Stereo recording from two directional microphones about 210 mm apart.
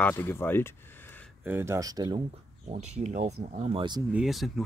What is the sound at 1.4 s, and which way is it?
Speech, 10° right (ahead or behind).